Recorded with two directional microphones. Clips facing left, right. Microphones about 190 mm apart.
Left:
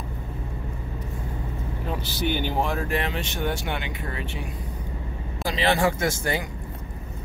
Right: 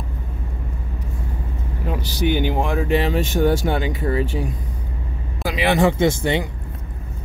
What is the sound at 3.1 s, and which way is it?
Speech, 40° right (ahead or behind).